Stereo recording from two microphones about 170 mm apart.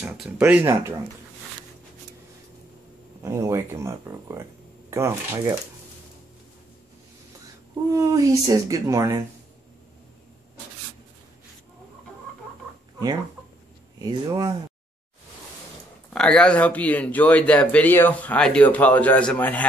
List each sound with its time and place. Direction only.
0.4 s speech: 10° right (ahead or behind)
3.2 s speech: 15° right (ahead or behind)
7.9 s speech: 20° right (ahead or behind)
14.0 s speech: 25° right (ahead or behind)
16.1 s speech: 5° left (ahead or behind)